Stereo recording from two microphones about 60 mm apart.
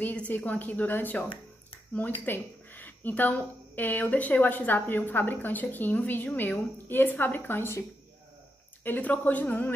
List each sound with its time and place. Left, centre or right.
0.0 s a woman's voice: left
8.8 s a woman's voice: left